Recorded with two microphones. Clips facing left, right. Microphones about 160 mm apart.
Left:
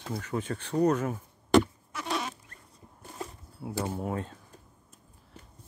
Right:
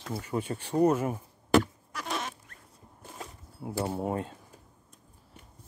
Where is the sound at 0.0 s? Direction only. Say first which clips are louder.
Right 1 dB; 5° right (ahead or behind).